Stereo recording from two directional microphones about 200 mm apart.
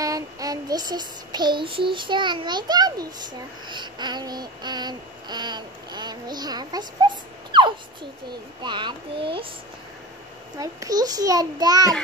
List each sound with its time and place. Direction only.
0.0 s child singing: 15° right (ahead or behind)
10.6 s child singing: 15° right (ahead or behind)